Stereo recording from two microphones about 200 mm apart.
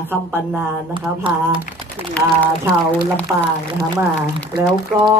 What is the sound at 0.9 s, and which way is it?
Speech, 25° right (ahead or behind).